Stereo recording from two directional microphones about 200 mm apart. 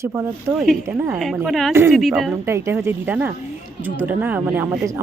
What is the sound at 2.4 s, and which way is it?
Speech, 15° right (ahead or behind).